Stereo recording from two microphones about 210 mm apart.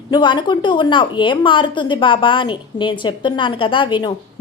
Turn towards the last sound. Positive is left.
turn(degrees=20)  # may be behind; listen again after turning